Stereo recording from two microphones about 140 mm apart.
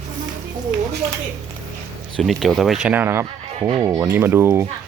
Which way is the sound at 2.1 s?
Centre (ahead or behind).